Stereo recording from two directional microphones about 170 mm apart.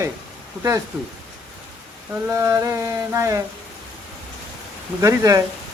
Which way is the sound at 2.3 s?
15° right (ahead or behind).